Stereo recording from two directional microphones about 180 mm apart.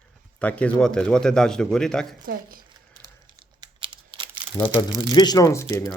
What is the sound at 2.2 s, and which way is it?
Speech, 55° right (ahead or behind).